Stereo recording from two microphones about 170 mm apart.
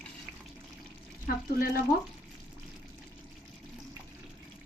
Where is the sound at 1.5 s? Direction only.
60° left (ahead or behind).